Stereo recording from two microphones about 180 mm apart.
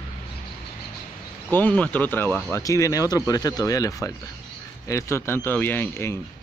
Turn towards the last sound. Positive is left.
turn(degrees=10)  # may be behind; listen again after turning